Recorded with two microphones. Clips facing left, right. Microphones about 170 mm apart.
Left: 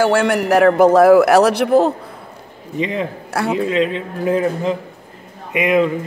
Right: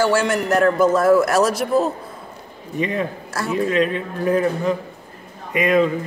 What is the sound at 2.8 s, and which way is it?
Speech, 20° left (ahead or behind).